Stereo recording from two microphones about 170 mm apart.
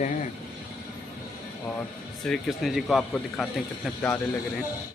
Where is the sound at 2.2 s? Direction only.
Centre (ahead or behind).